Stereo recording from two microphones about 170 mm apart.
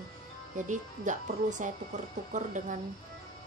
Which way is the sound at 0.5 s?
45° right (ahead or behind).